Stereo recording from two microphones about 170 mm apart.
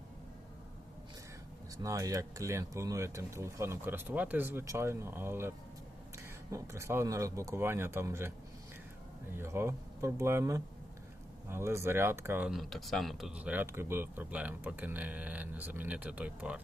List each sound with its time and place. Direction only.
1.8 s speech: 20° right (ahead or behind)
9.3 s speech: 15° right (ahead or behind)